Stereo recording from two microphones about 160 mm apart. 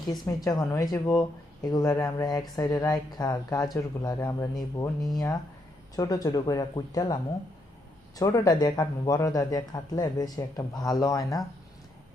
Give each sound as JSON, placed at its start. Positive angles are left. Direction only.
{"t": 0.3, "sound": "speech", "side_deg": 25}